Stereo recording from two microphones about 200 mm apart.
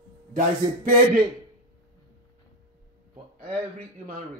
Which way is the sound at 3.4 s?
50° right (ahead or behind).